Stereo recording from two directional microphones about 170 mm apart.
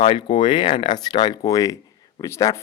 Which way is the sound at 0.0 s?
30° left (ahead or behind).